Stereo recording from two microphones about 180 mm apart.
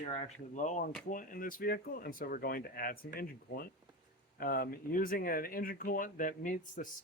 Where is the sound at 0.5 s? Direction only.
45° left (ahead or behind).